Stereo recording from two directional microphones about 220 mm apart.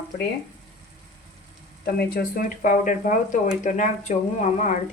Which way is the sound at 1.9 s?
40° left (ahead or behind).